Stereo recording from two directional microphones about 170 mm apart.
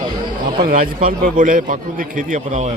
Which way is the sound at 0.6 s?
55° right (ahead or behind).